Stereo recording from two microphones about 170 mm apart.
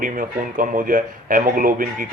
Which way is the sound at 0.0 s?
55° right (ahead or behind).